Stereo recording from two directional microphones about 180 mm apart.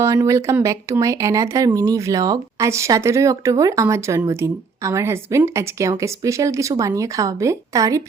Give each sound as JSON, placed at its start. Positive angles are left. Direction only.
{"t": 0.0, "sound": "speech", "side_deg": -15}